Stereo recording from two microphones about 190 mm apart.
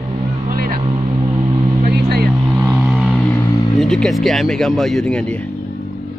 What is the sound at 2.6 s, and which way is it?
Vehicle, 10° right (ahead or behind).